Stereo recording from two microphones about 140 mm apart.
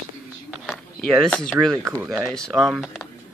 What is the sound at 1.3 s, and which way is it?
Speech, 5° left (ahead or behind).